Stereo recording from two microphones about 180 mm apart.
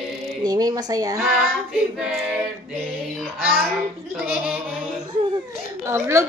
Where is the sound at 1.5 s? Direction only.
5° right (ahead or behind).